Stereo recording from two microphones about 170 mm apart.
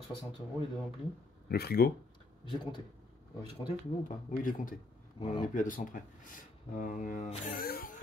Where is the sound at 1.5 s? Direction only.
65° left (ahead or behind).